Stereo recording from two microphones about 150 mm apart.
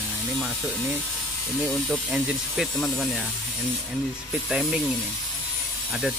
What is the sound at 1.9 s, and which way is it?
Speech, centre (ahead or behind).